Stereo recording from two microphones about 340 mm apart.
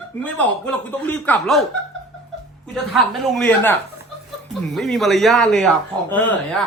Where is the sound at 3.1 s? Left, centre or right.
Centre.